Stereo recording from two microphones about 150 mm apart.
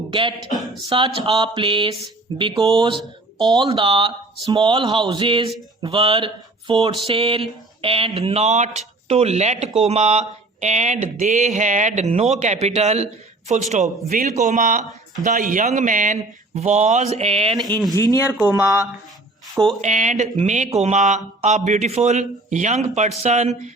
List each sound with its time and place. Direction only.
0.1 s speech: 35° right (ahead or behind)
0.9 s a sound: 35° right (ahead or behind)
9.0 s speech: 45° right (ahead or behind)
14.1 s a man's voice: 70° right (ahead or behind)
14.3 s speech: 55° right (ahead or behind)
18.3 s speech: 10° right (ahead or behind)
19.8 s speech: 55° right (ahead or behind)